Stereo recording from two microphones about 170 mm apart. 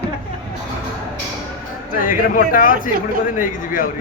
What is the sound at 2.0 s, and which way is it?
Speech, 55° left (ahead or behind).